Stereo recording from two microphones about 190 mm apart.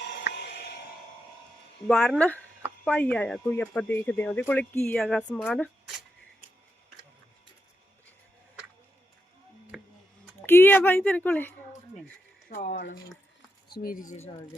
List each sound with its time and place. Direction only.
0.0 s music: 60° left (ahead or behind)
1.9 s speech: 5° left (ahead or behind)
9.7 s a sound: centre (ahead or behind)
10.4 s a woman's voice: 10° left (ahead or behind)
12.5 s speech: 40° left (ahead or behind)
12.7 s speech: 55° left (ahead or behind)